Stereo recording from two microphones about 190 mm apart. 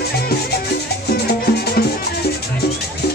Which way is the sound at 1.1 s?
55° left (ahead or behind).